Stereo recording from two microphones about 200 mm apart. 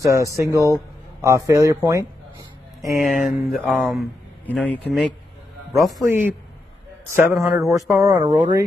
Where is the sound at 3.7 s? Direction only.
5° left (ahead or behind).